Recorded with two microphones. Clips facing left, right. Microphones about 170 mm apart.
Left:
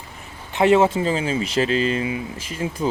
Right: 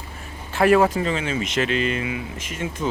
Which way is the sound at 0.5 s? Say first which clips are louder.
Left 1 dB; 25° left (ahead or behind).